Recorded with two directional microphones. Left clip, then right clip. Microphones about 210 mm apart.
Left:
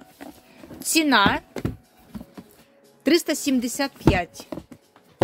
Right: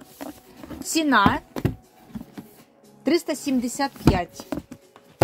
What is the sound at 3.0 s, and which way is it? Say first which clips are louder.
A woman's voice: left 2 dB; 25° left (ahead or behind).